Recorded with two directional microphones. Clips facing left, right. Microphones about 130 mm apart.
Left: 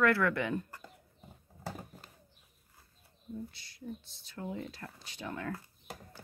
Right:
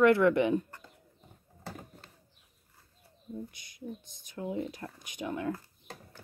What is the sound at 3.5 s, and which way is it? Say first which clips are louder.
Speech: right 2 dB; 15° right (ahead or behind).